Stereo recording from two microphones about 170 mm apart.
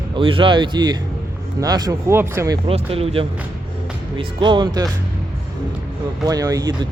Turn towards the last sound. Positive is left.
turn(degrees=-20)  # may be behind; listen again after turning